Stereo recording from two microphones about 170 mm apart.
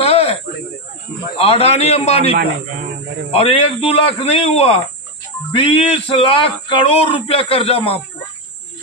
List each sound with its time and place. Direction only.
0.0 s a sound: 35° left (ahead or behind)
1.4 s a man's voice: 35° left (ahead or behind)
2.3 s speech: 50° right (ahead or behind)
3.3 s a man's voice: 35° left (ahead or behind)